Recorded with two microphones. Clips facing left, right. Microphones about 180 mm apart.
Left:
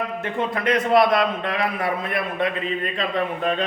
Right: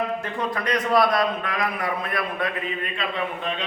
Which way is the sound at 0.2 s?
25° left (ahead or behind).